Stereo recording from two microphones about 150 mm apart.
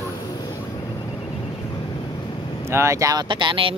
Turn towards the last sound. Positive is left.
turn(degrees=-35)  # may be behind; listen again after turning